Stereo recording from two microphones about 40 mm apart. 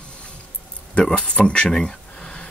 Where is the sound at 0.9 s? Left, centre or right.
Left.